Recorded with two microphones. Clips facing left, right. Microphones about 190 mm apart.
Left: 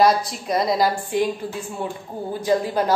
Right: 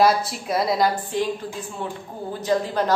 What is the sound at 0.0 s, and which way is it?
A woman's voice, 5° right (ahead or behind).